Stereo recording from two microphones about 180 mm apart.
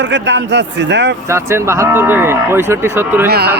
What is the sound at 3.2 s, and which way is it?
Speech, 65° right (ahead or behind).